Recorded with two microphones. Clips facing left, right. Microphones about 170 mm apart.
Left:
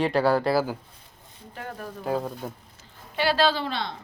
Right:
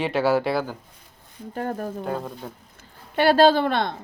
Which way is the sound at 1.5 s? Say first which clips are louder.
Right 8 dB; 45° right (ahead or behind).